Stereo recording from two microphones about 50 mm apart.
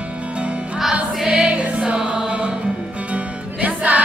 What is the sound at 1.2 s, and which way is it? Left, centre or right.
Music, centre.